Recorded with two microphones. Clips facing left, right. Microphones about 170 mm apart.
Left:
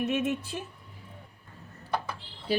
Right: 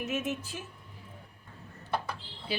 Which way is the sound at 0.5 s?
40° left (ahead or behind).